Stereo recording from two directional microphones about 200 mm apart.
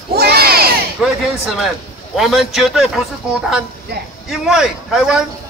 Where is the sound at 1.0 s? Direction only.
5° right (ahead or behind).